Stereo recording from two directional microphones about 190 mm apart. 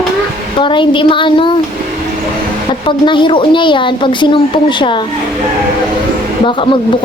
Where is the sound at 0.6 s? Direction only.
25° left (ahead or behind).